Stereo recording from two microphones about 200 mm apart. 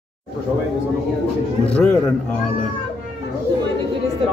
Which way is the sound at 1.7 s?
5° left (ahead or behind).